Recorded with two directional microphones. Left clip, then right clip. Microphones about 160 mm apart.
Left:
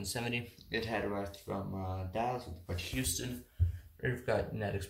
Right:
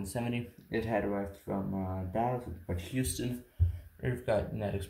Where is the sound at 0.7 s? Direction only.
40° right (ahead or behind).